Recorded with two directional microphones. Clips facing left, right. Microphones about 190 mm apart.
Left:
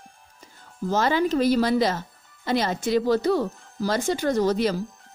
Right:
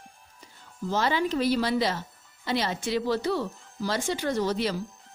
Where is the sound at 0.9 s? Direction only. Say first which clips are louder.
Left 4 dB; 45° left (ahead or behind).